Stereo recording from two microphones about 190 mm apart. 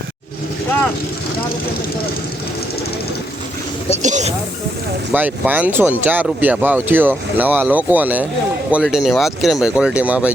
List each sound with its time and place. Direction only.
4.0 s snake: 40° right (ahead or behind)
5.1 s speech: 10° right (ahead or behind)